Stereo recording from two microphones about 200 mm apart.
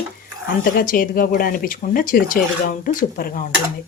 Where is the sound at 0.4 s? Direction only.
45° left (ahead or behind).